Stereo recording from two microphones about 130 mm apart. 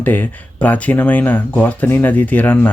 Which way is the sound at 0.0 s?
15° left (ahead or behind).